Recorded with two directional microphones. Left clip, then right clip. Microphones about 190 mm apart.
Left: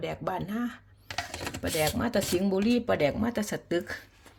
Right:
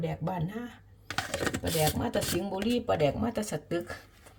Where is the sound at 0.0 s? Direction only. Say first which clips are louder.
Left 2 dB; 25° left (ahead or behind).